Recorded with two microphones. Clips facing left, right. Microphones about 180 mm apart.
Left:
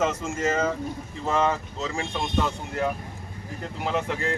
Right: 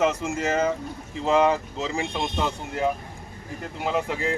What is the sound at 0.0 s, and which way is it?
Speech, 10° right (ahead or behind).